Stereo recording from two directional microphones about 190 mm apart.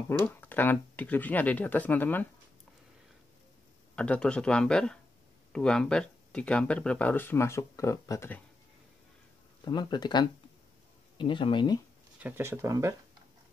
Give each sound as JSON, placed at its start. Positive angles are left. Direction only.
{"t": 0.2, "sound": "speech", "side_deg": 10}
{"t": 3.9, "sound": "speech", "side_deg": 5}
{"t": 9.7, "sound": "speech", "side_deg": 20}
{"t": 12.2, "sound": "speech", "side_deg": -10}